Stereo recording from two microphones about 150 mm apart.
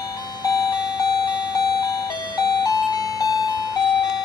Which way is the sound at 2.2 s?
25° left (ahead or behind).